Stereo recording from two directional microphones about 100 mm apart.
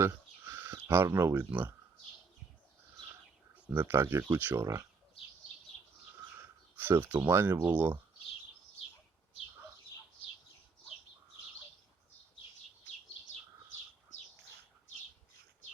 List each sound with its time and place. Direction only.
0.0 s a sound: 25° right (ahead or behind)
0.9 s speech: 20° right (ahead or behind)
3.5 s speech: 20° right (ahead or behind)
4.6 s speech: 30° right (ahead or behind)
6.7 s speech: 20° right (ahead or behind)